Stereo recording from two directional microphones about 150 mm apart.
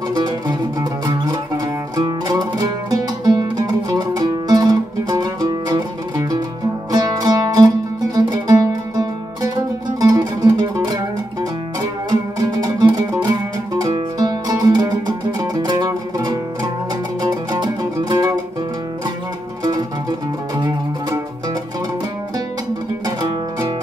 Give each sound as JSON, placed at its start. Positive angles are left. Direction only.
{"t": 0.1, "sound": "music", "side_deg": -30}
{"t": 12.1, "sound": "music", "side_deg": -25}
{"t": 17.2, "sound": "music", "side_deg": -25}
{"t": 19.6, "sound": "music", "side_deg": -25}